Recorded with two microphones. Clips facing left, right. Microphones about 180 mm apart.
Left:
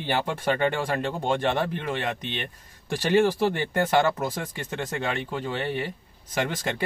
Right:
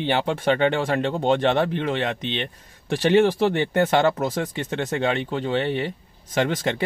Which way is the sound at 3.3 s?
70° right (ahead or behind).